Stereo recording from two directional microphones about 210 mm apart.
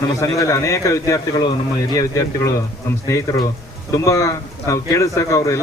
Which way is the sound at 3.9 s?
15° left (ahead or behind).